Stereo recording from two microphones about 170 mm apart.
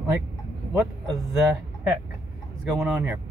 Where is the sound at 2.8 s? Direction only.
10° right (ahead or behind).